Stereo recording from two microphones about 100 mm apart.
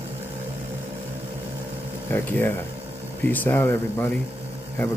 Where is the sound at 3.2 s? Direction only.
20° left (ahead or behind).